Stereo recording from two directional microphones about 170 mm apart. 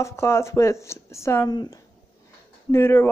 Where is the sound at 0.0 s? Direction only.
15° left (ahead or behind).